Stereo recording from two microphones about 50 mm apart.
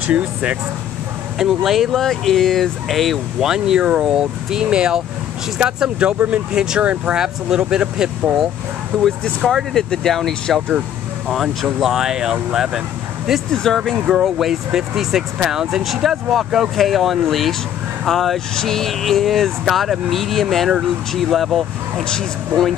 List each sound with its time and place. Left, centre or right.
0.0 s speech: right
1.4 s speech: centre
3.3 s speech: centre; by 7.2 s right
7.2 s speech: centre
8.9 s a sound: centre
9.4 s speech: centre
9.8 s a sound: centre
11.6 s speech: centre
13.5 s a sound: centre
13.9 s speech: centre
18.5 s a sound: centre
19.6 s speech: centre